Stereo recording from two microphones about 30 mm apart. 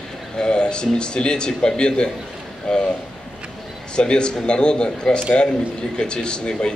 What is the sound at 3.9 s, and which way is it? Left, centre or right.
A man's voice, left.